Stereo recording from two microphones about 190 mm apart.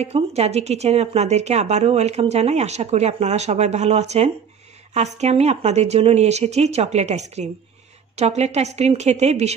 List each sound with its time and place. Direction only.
0.0 s speech: 35° right (ahead or behind)